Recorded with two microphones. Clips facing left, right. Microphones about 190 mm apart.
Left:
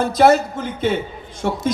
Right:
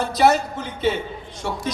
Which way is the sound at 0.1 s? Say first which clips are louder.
Left 3 dB; 50° left (ahead or behind).